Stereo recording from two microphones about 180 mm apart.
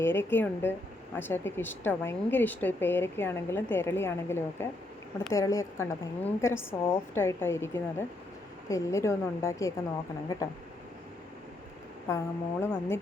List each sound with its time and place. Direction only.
0.0 s a woman's voice: 10° left (ahead or behind)
12.0 s a woman's voice: 15° left (ahead or behind)